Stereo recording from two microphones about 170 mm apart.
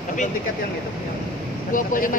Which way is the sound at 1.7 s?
50° left (ahead or behind).